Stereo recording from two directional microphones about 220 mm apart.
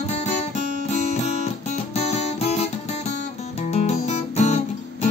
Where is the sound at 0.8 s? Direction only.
30° left (ahead or behind).